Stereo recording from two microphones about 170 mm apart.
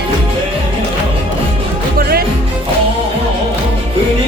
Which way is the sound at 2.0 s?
65° right (ahead or behind).